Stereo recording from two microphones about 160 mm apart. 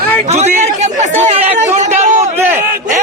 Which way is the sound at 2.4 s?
15° right (ahead or behind).